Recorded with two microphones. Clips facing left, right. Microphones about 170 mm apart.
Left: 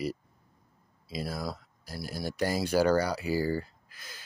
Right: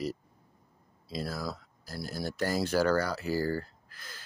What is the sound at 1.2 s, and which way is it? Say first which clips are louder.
Speech: left 1 dB; 20° left (ahead or behind).